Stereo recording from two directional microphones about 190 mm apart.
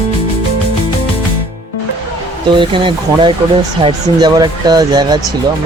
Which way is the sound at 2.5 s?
25° right (ahead or behind).